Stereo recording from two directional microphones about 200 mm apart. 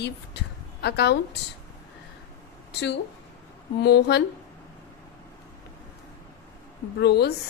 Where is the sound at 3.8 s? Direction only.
55° left (ahead or behind).